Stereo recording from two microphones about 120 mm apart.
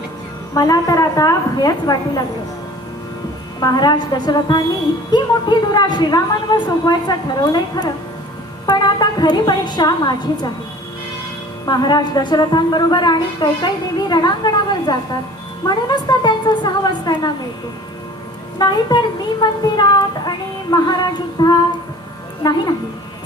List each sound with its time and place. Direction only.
0.5 s a woman's voice: 30° left (ahead or behind)
3.6 s a woman's voice: 35° left (ahead or behind)
11.6 s a woman's voice: 35° left (ahead or behind)
18.6 s a woman's voice: 35° left (ahead or behind)